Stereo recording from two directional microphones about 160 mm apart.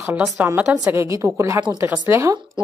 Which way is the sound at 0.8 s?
20° right (ahead or behind).